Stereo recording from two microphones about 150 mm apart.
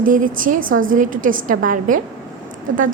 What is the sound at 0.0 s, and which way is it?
A woman's voice, 65° right (ahead or behind).